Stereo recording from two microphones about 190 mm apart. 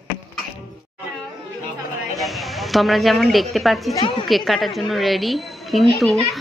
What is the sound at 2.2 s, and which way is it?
A woman's voice, centre (ahead or behind).